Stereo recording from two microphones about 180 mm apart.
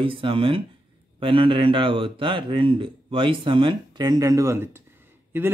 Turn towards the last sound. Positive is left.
turn(degrees=-10)  # may be behind; listen again after turning